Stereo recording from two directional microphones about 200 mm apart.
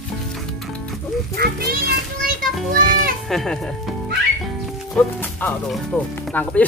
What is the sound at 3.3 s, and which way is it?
Speech, centre (ahead or behind).